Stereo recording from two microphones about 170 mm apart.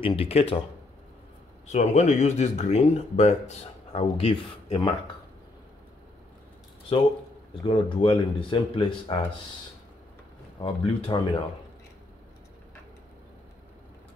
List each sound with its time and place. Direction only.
0.0 s speech: 35° left (ahead or behind)
1.7 s speech: 40° left (ahead or behind)
6.9 s speech: 30° left (ahead or behind)
10.6 s speech: 30° left (ahead or behind)